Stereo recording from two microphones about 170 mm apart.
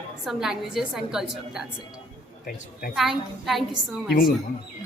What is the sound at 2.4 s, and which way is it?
Speech, 55° left (ahead or behind).